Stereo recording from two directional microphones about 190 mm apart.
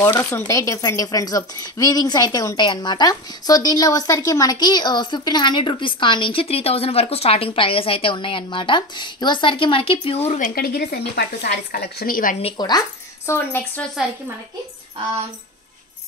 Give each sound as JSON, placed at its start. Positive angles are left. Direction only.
{"t": 0.0, "sound": "speech", "side_deg": 15}
{"t": 10.5, "sound": "speech", "side_deg": 55}
{"t": 12.4, "sound": "speech", "side_deg": 25}
{"t": 13.3, "sound": "speech", "side_deg": 10}